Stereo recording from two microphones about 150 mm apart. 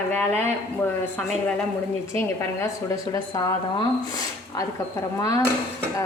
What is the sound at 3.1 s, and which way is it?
Speech, 25° left (ahead or behind).